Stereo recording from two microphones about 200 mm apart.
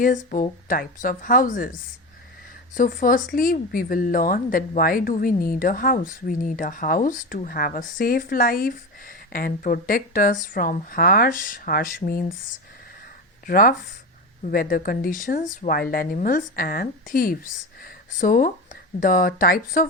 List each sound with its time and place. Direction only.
0.0 s speech: 40° left (ahead or behind)
2.7 s speech: 45° left (ahead or behind)
13.5 s speech: 45° left (ahead or behind)